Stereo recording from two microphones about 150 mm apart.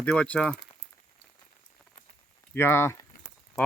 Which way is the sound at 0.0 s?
10° left (ahead or behind).